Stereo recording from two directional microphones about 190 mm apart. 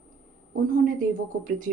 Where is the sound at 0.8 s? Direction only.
45° right (ahead or behind).